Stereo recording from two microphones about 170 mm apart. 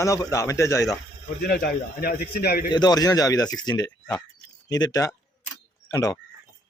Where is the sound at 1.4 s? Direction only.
65° left (ahead or behind).